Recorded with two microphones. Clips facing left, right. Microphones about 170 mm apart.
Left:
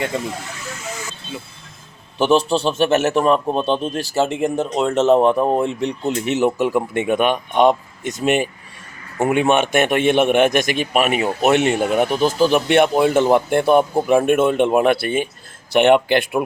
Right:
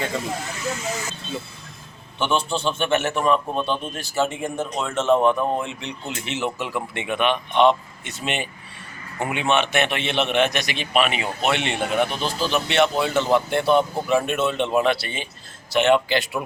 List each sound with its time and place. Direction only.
2.1 s a man's voice: 40° left (ahead or behind); by 16.4 s 55° left (ahead or behind)